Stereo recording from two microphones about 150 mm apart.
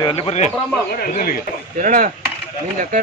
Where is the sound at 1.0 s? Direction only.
75° left (ahead or behind).